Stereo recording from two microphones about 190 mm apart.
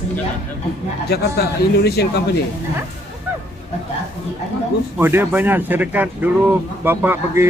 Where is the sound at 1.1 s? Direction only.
55° left (ahead or behind).